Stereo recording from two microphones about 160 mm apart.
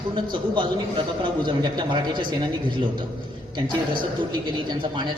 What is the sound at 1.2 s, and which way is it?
A man's voice, 30° right (ahead or behind).